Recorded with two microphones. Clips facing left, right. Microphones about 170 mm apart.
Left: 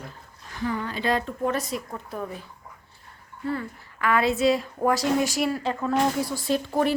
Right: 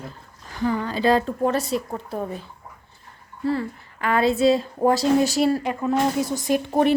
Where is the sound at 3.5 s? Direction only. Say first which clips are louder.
Right 5 dB; 30° right (ahead or behind).